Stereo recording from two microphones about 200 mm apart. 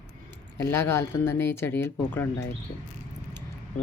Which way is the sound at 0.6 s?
10° left (ahead or behind).